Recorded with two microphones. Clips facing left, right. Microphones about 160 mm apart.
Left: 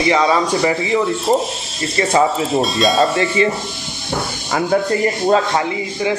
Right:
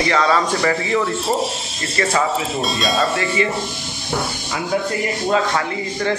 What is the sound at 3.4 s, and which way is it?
Speech, 30° left (ahead or behind).